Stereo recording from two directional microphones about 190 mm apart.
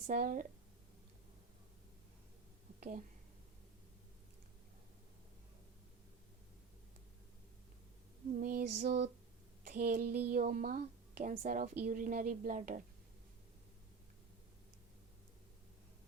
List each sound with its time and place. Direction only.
0.1 s speech: 45° right (ahead or behind)
8.3 s speech: 45° right (ahead or behind)